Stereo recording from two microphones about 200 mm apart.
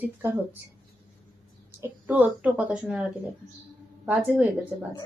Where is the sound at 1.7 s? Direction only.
10° right (ahead or behind).